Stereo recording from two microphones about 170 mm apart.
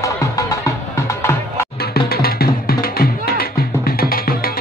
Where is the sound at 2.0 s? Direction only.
65° left (ahead or behind).